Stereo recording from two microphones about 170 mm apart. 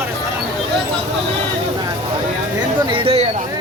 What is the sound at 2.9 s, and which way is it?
Speech, 30° right (ahead or behind).